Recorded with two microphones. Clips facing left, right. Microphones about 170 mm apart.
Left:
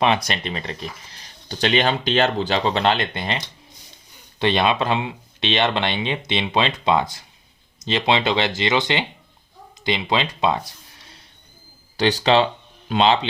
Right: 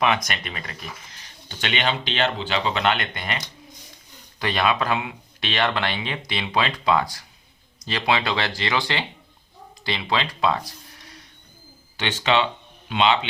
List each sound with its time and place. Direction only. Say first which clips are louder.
0.0 s speech: left 3 dB; 30° left (ahead or behind)
11.9 s speech: left 5 dB; 35° left (ahead or behind)